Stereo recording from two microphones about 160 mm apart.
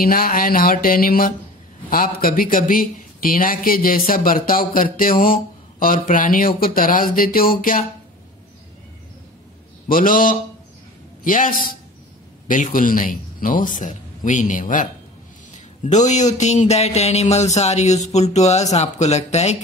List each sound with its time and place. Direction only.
0.0 s speech: 65° left (ahead or behind)
9.8 s speech: 60° left (ahead or behind); by 19.5 s 45° left (ahead or behind)